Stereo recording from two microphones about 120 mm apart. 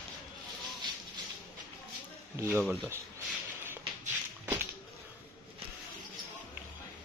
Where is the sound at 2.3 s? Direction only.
20° right (ahead or behind).